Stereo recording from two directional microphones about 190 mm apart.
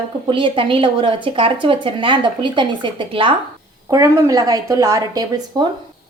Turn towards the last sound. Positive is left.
turn(degrees=-20)  # may be behind; listen again after turning